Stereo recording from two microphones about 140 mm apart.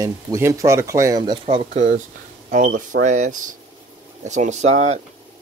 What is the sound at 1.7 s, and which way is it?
Speech, 65° right (ahead or behind).